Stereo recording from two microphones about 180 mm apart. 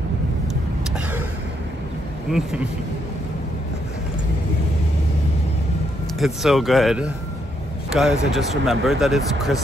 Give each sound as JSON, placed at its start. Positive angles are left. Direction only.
{"t": 2.3, "sound": "speech", "side_deg": -5}
{"t": 6.1, "sound": "speech", "side_deg": 0}